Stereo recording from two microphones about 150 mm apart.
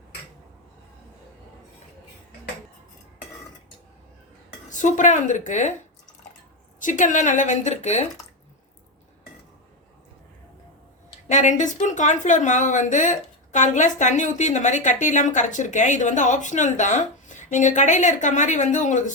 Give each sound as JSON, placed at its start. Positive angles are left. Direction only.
{"t": 4.7, "sound": "a woman's voice", "side_deg": 55}
{"t": 6.7, "sound": "a woman's voice", "side_deg": 55}
{"t": 11.3, "sound": "a woman's voice", "side_deg": 55}